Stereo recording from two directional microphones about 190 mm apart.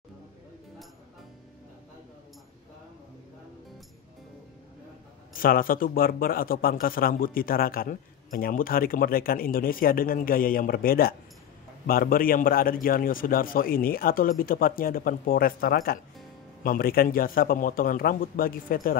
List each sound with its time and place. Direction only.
5.3 s a man's voice: 50° left (ahead or behind)